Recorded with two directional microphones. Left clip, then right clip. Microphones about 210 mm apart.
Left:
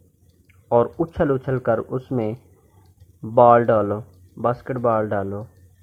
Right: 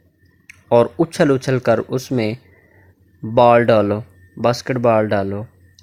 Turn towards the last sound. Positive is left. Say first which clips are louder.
# right 5 dB
turn(degrees=-35)  # may be behind; listen again after turning